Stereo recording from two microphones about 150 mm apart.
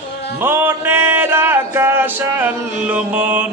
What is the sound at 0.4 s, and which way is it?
Music, 15° right (ahead or behind).